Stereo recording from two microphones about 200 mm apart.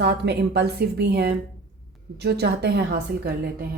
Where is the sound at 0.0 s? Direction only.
55° right (ahead or behind).